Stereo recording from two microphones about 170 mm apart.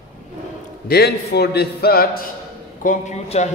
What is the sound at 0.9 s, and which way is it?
A man's voice, 70° left (ahead or behind).